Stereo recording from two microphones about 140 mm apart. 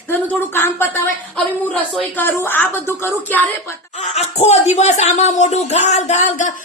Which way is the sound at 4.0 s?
50° left (ahead or behind).